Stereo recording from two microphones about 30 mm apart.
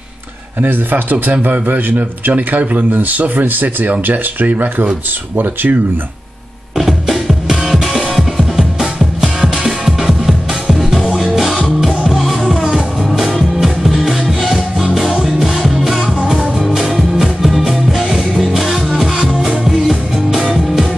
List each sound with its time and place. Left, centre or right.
1.3 s a man's voice: right
2.3 s speech: right
3.9 s speech: right
6.8 s music: centre
8.5 s music: right
9.6 s music: centre
15.7 s music: centre